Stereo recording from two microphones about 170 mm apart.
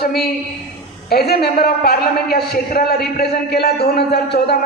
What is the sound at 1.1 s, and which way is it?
A man's voice, 65° left (ahead or behind).